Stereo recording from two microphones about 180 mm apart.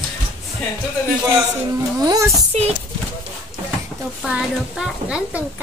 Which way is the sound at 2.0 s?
20° right (ahead or behind).